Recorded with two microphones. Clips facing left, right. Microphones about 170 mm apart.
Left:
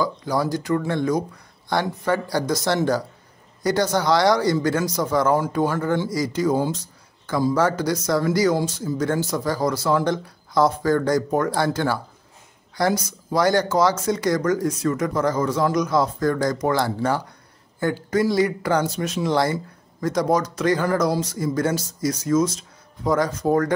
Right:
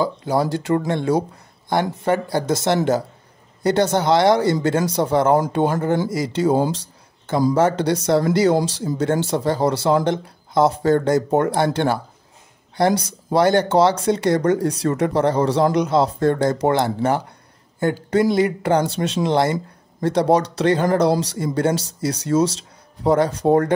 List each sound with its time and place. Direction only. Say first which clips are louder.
0.0 s speech: right 3 dB; 25° right (ahead or behind)
6.7 s a sound: right 1 dB; 30° right (ahead or behind)
7.5 s speech: right 3 dB; 25° right (ahead or behind)
13.0 s speech: right 3 dB; 30° right (ahead or behind)